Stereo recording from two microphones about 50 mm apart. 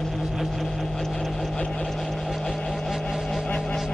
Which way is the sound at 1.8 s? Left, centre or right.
Centre.